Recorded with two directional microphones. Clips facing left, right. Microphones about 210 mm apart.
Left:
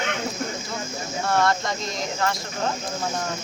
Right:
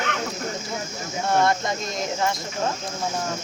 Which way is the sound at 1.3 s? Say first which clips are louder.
Right 1 dB; 20° right (ahead or behind).